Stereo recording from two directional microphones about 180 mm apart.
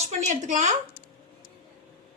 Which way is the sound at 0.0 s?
40° right (ahead or behind).